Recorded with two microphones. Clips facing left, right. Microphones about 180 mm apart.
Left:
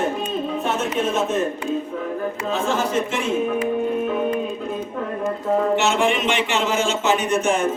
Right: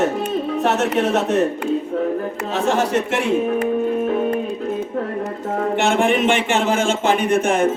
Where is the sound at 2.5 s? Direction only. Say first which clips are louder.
Right 4 dB; 70° right (ahead or behind).